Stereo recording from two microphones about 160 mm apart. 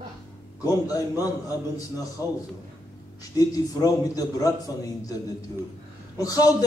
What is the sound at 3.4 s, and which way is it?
Speech, 25° left (ahead or behind).